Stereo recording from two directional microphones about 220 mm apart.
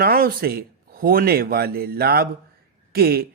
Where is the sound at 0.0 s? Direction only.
40° right (ahead or behind).